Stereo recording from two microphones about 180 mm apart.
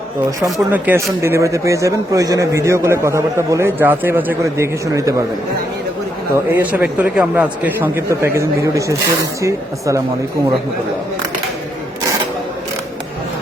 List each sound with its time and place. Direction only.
0.7 s a man's voice: 10° right (ahead or behind)
6.3 s a man's voice: 10° right (ahead or behind)